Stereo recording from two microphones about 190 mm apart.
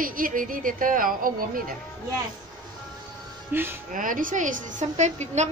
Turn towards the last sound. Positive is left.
turn(degrees=-35)  # may be behind; listen again after turning